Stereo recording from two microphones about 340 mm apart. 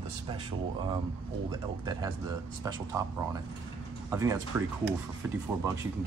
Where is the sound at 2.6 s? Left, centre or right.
Centre.